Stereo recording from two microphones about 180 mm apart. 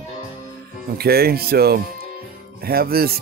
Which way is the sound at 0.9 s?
60° right (ahead or behind).